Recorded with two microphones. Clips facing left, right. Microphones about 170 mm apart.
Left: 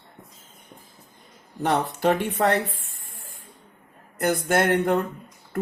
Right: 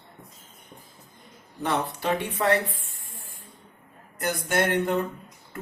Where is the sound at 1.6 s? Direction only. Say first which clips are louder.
Left 4 dB; 50° left (ahead or behind).